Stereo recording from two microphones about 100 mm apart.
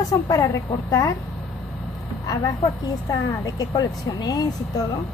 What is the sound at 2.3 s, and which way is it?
Speech, 40° left (ahead or behind).